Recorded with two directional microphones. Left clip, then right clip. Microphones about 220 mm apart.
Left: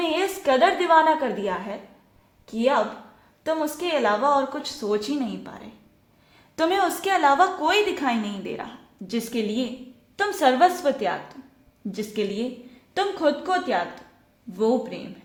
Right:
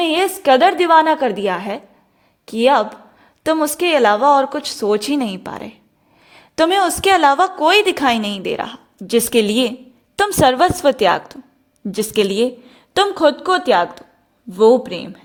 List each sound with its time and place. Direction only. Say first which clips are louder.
0.0 s a woman's voice: right 8 dB; 40° right (ahead or behind)